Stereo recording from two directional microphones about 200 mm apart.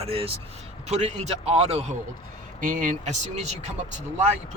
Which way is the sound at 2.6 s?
45° right (ahead or behind).